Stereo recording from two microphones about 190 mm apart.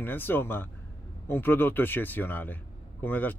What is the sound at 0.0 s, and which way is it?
A man's voice, 10° left (ahead or behind).